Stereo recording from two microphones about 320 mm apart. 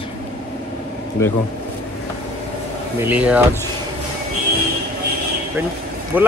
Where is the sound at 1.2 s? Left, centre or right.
Centre.